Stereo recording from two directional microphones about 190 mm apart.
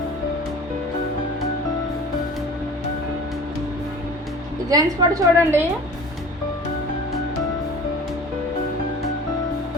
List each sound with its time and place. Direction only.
4.7 s a woman's voice: 20° right (ahead or behind)